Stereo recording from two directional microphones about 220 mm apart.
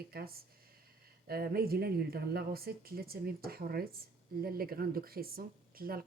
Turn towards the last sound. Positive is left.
turn(degrees=-40)  # may be behind; listen again after turning